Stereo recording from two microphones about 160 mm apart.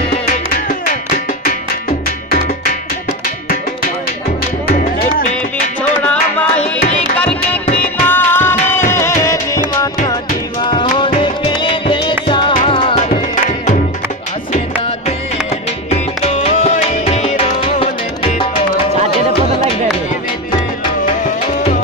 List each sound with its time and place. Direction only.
0.7 s music: 60° left (ahead or behind)
4.6 s music: 55° left (ahead or behind)
6.0 s music: 10° left (ahead or behind)
7.8 s music: 10° left (ahead or behind)
10.6 s music: 30° left (ahead or behind)
15.9 s music: 40° left (ahead or behind)